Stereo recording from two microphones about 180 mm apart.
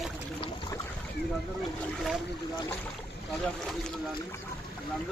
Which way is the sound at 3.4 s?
5° left (ahead or behind).